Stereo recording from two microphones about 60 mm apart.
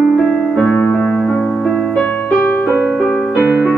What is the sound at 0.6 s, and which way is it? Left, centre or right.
Keyboard, left.